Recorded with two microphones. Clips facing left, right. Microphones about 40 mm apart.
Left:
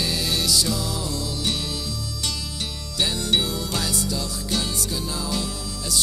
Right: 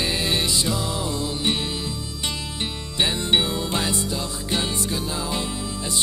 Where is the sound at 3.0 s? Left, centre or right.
Right.